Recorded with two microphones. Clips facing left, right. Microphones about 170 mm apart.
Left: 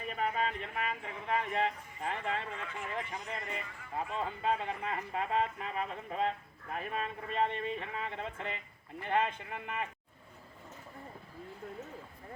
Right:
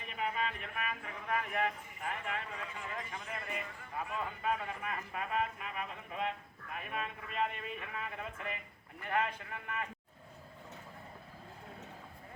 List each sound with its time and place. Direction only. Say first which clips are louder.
0.1 s a man's voice: left 3 dB; 40° left (ahead or behind); by 9.9 s 20° left (ahead or behind)